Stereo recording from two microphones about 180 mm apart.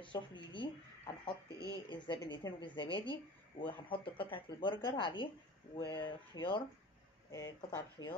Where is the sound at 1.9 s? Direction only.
25° left (ahead or behind).